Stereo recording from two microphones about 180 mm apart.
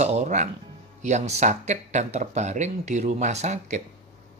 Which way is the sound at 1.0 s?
40° right (ahead or behind).